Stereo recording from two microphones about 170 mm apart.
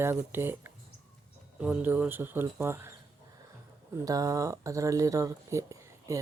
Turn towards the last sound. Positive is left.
turn(degrees=-20)  # may be behind; listen again after turning